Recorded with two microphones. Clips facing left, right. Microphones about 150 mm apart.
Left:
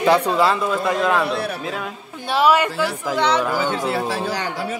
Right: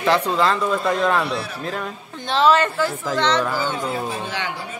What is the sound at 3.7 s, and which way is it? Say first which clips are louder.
Speech: left 3 dB; 80° left.